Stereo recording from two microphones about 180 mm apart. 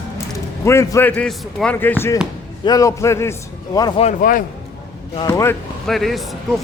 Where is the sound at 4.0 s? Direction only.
45° left (ahead or behind).